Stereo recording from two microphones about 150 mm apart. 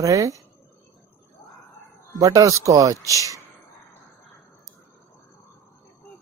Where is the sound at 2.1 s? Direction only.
20° right (ahead or behind).